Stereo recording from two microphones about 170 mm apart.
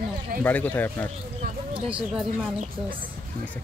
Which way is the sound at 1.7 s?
30° right (ahead or behind).